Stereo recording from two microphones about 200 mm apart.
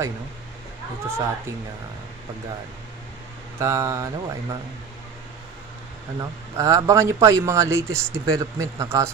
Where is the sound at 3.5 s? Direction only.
15° right (ahead or behind).